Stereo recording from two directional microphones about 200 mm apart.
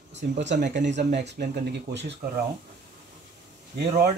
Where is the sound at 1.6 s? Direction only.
55° right (ahead or behind).